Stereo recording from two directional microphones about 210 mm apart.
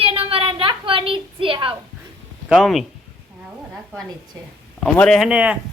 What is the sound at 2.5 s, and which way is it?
Speech, centre (ahead or behind).